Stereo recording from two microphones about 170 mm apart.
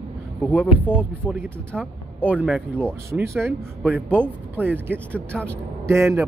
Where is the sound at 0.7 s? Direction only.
10° right (ahead or behind).